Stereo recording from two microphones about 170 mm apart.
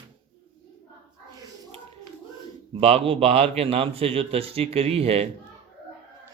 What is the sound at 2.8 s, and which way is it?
Speech, 35° right (ahead or behind).